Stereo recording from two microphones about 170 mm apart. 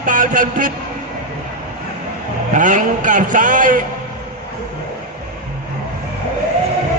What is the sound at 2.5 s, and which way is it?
A man's voice, 50° right (ahead or behind).